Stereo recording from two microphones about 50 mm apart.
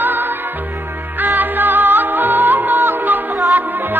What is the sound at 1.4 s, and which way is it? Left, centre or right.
Music, right.